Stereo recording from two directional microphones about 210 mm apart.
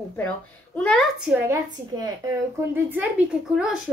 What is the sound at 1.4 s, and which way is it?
A woman's voice, 15° right (ahead or behind).